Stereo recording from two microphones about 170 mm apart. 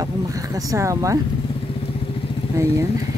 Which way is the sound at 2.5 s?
15° right (ahead or behind).